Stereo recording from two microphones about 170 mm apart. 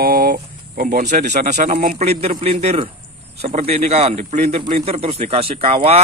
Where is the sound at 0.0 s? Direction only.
60° right (ahead or behind).